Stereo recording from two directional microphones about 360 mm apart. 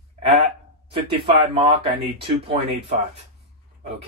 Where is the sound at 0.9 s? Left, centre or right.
Centre.